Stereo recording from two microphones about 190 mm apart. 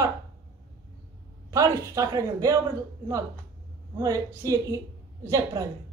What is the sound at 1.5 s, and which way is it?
A woman's voice, 20° right (ahead or behind).